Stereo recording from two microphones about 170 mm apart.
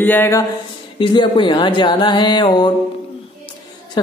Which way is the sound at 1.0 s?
30° left (ahead or behind).